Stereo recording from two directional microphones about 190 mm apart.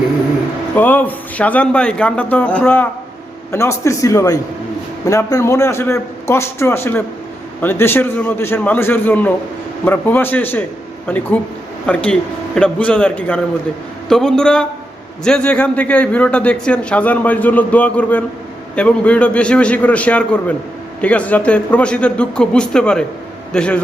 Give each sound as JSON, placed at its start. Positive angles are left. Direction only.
{"t": 0.8, "sound": "a man's voice", "side_deg": 10}
{"t": 12.5, "sound": "a man's voice", "side_deg": 5}